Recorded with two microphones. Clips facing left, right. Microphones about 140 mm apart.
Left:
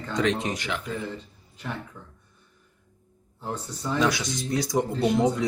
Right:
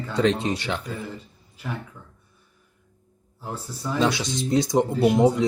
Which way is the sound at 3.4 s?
5° right (ahead or behind).